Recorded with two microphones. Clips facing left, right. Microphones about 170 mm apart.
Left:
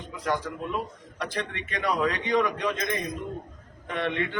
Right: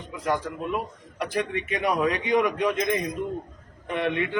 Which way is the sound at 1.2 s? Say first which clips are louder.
Right 5 dB; 15° right (ahead or behind).